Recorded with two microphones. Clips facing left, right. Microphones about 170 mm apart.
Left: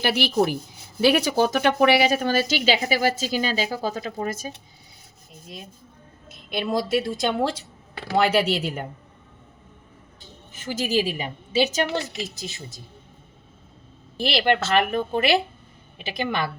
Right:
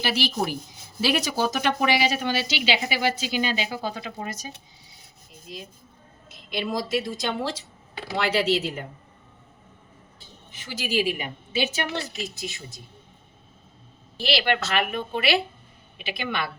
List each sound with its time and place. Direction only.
0.0 s a woman's voice: 55° left (ahead or behind)
6.2 s a woman's voice: 55° left (ahead or behind)
10.5 s a woman's voice: 50° left (ahead or behind)
14.2 s a woman's voice: 50° left (ahead or behind)